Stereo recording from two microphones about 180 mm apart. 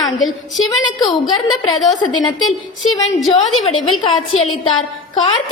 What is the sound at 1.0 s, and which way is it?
A woman's voice, 20° left (ahead or behind).